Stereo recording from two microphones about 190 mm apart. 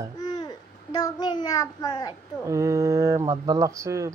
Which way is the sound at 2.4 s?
15° right (ahead or behind).